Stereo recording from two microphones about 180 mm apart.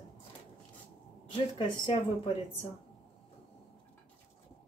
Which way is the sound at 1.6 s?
25° left (ahead or behind).